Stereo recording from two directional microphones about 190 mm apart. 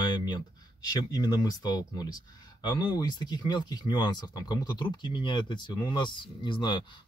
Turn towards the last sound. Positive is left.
turn(degrees=25)  # may be behind; listen again after turning